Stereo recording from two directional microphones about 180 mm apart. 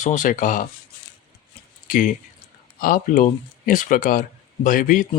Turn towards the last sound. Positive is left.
turn(degrees=50)  # may be behind; listen again after turning